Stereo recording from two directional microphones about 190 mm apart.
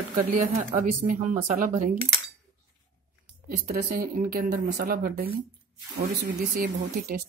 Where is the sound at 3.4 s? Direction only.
50° right (ahead or behind).